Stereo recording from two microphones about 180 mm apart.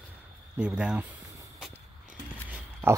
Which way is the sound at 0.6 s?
5° right (ahead or behind).